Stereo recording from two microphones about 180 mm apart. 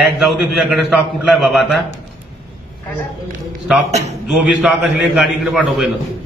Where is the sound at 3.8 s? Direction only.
40° right (ahead or behind).